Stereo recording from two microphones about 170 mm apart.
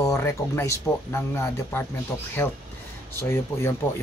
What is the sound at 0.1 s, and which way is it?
Speech, 15° left (ahead or behind).